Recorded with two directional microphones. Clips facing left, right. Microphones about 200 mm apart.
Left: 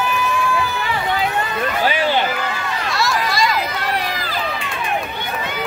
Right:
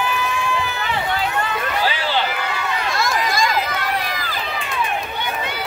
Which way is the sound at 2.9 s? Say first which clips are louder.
Left 2 dB; 50° right (ahead or behind).